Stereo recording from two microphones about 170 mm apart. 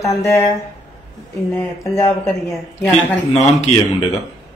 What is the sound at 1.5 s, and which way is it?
Speech, 20° left (ahead or behind).